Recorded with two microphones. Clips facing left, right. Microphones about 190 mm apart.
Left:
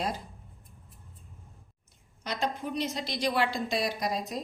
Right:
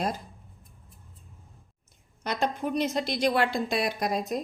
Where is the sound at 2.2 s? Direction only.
50° right (ahead or behind).